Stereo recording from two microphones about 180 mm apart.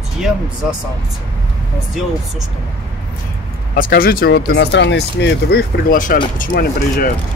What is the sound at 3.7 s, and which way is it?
Speech, 50° left (ahead or behind).